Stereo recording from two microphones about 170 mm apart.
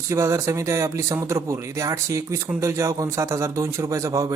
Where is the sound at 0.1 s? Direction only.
15° right (ahead or behind).